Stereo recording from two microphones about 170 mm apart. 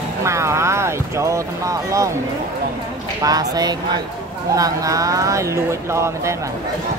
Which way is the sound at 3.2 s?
20° right (ahead or behind).